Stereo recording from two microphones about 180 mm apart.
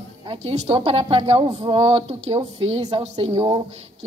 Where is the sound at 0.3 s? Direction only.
35° right (ahead or behind).